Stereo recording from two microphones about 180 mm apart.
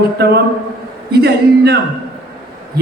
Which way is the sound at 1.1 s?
65° right (ahead or behind).